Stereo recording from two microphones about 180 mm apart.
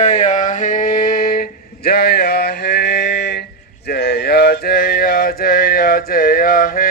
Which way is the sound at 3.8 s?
60° left (ahead or behind).